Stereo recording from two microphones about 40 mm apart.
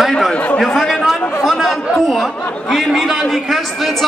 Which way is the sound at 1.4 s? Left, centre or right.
Centre.